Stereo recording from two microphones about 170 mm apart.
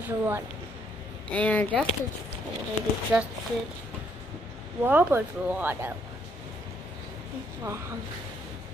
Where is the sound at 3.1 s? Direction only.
5° right (ahead or behind).